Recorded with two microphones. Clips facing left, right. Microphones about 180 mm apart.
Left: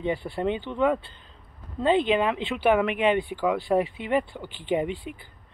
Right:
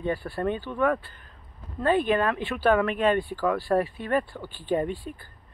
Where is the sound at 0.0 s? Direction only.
20° left (ahead or behind).